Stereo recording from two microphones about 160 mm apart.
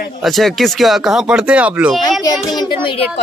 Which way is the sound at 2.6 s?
30° left (ahead or behind).